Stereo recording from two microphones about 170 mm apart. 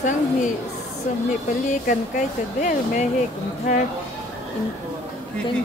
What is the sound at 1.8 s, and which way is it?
Speech, 55° left (ahead or behind).